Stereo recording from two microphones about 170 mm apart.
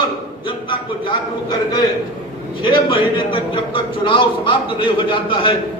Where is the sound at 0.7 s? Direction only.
25° left (ahead or behind).